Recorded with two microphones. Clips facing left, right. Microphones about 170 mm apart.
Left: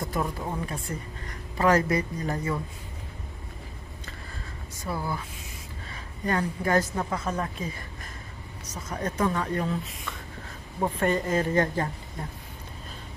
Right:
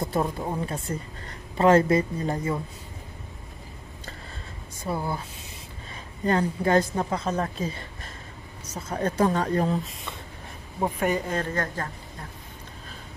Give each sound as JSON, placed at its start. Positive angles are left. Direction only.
{"t": 0.0, "sound": "a sound", "side_deg": -30}
{"t": 0.9, "sound": "a woman's voice", "side_deg": -25}
{"t": 4.8, "sound": "a woman's voice", "side_deg": -25}
{"t": 6.2, "sound": "a woman's voice", "side_deg": -25}
{"t": 8.7, "sound": "speech", "side_deg": -30}
{"t": 10.8, "sound": "speech", "side_deg": -10}
{"t": 11.2, "sound": "speech", "side_deg": 5}
{"t": 11.5, "sound": "speech", "side_deg": 20}